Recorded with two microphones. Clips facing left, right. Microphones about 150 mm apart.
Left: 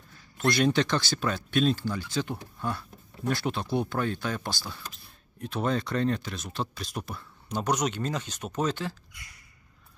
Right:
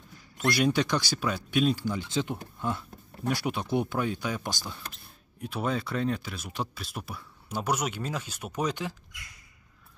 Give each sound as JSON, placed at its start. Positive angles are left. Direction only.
{"t": 0.4, "sound": "speech", "side_deg": -5}
{"t": 2.0, "sound": "speech", "side_deg": -20}